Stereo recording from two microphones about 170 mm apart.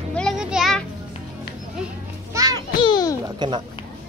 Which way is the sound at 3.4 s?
25° right (ahead or behind).